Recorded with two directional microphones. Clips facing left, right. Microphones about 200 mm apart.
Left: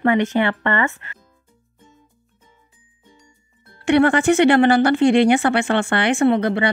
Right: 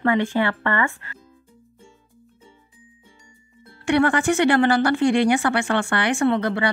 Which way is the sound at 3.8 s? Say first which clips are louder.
Left 4 dB; 25° left (ahead or behind).